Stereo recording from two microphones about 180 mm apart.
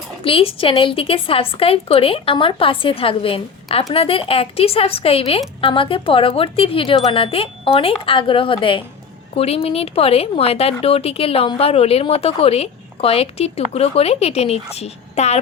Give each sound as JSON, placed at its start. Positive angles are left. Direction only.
{"t": 0.3, "sound": "speech", "side_deg": 30}